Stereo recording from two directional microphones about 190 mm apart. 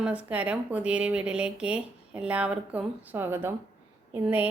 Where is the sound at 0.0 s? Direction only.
5° right (ahead or behind).